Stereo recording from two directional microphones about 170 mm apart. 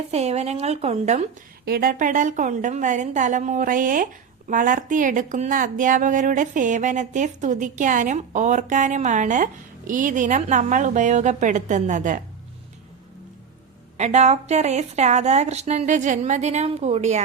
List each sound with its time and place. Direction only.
0.1 s a woman's voice: 40° right (ahead or behind)
1.6 s a woman's voice: 65° right (ahead or behind)
13.9 s a woman's voice: 40° right (ahead or behind)